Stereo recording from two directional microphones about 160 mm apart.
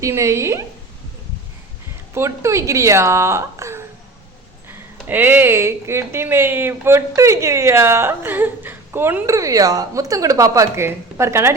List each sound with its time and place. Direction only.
0.0 s a woman's voice: 20° right (ahead or behind)
2.1 s speech: 20° right (ahead or behind)
5.0 s speech: 10° right (ahead or behind)